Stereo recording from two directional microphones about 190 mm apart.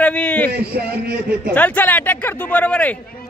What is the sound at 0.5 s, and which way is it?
Speech, 55° right (ahead or behind).